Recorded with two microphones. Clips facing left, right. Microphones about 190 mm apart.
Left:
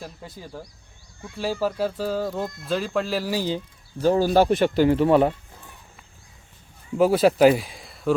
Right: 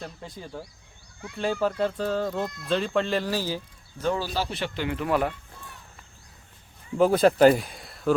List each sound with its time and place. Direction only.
0.0 s speech: 5° left (ahead or behind)
4.0 s speech: 45° left (ahead or behind); by 5.3 s 30° left (ahead or behind)
6.9 s speech: 5° left (ahead or behind)